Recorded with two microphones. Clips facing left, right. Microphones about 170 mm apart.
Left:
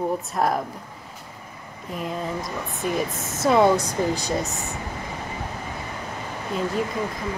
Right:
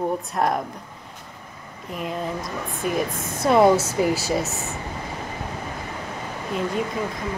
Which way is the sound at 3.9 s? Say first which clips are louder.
Right 2 dB; 5° right (ahead or behind).